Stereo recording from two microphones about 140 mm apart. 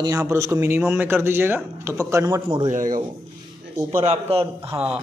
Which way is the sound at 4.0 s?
45° right (ahead or behind).